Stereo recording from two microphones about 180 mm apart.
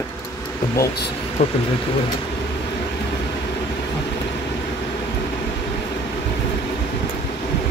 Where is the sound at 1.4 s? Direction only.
35° left (ahead or behind).